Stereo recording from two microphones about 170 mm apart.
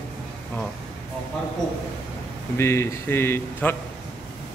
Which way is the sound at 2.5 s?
15° left (ahead or behind).